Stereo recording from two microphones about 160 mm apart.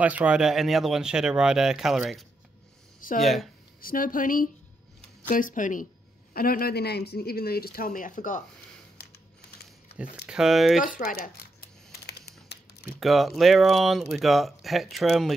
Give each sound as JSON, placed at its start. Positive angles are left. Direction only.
{"t": 0.0, "sound": "speech", "side_deg": -10}
{"t": 3.8, "sound": "speech", "side_deg": 60}
{"t": 6.3, "sound": "speech", "side_deg": 65}
{"t": 10.2, "sound": "speech", "side_deg": -5}
{"t": 10.8, "sound": "a sound", "side_deg": 60}
{"t": 13.0, "sound": "speech", "side_deg": 0}